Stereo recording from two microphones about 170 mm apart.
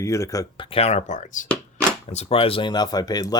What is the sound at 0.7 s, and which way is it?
Speech, 40° left (ahead or behind).